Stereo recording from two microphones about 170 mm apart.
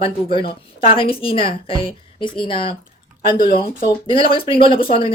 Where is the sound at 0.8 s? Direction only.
30° left (ahead or behind).